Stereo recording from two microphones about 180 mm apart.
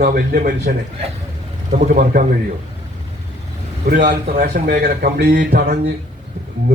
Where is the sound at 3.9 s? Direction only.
50° right (ahead or behind).